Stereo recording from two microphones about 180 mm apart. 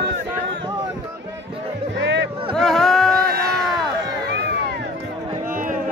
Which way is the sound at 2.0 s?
80° right.